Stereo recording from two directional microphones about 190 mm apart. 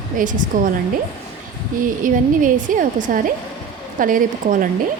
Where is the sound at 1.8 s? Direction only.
45° right (ahead or behind).